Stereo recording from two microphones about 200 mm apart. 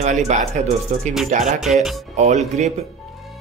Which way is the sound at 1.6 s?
Centre (ahead or behind).